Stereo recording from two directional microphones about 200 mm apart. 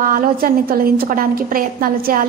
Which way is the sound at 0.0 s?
45° right (ahead or behind).